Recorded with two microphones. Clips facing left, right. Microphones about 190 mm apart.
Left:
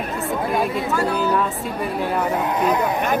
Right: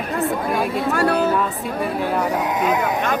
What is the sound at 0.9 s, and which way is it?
Speech, 65° right (ahead or behind).